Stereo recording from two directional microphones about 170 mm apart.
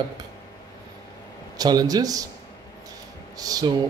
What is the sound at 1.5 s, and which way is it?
Speech, 20° right (ahead or behind).